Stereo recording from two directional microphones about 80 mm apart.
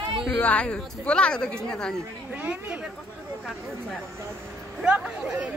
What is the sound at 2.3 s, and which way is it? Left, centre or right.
Speech, centre.